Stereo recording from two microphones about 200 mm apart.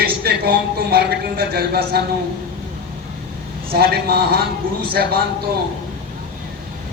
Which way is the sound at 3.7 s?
50° right (ahead or behind).